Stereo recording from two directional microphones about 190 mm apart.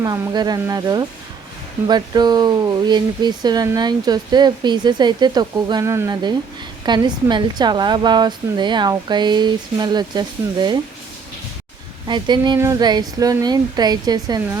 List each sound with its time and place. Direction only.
0.0 s speech: 20° right (ahead or behind)
12.0 s speech: 25° right (ahead or behind)